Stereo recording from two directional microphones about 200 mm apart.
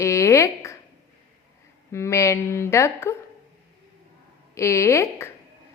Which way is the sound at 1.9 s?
15° left (ahead or behind).